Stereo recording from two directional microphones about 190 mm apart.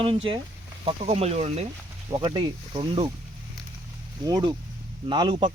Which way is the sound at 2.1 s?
25° right (ahead or behind).